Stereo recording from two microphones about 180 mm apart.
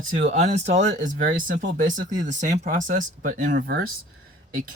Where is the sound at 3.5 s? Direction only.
60° right (ahead or behind).